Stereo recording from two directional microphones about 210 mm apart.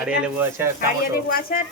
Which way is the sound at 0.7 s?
45° left (ahead or behind).